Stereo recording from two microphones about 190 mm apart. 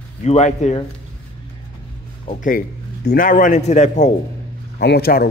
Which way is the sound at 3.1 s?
45° left (ahead or behind).